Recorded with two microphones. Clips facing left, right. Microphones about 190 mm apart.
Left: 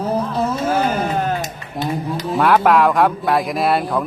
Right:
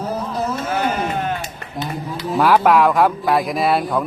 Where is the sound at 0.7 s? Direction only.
35° left (ahead or behind).